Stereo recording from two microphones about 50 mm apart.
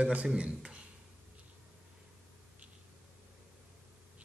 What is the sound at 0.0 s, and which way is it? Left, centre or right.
Speech, right.